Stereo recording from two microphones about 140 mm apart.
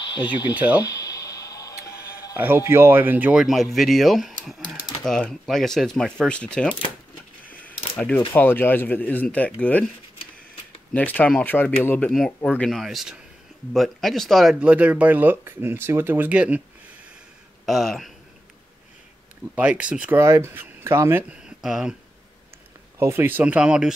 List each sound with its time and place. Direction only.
0.6 s speech: 10° right (ahead or behind)
0.8 s a sound: 25° left (ahead or behind)
2.3 s speech: 15° right (ahead or behind); by 6.8 s 5° left (ahead or behind)
7.4 s mechanisms: 10° left (ahead or behind)
8.4 s speech: 15° left (ahead or behind)
10.9 s speech: 10° left (ahead or behind)
12.1 s speech: centre (ahead or behind)
17.6 s speech: centre (ahead or behind)
19.5 s speech: 10° right (ahead or behind)
22.9 s speech: 15° right (ahead or behind)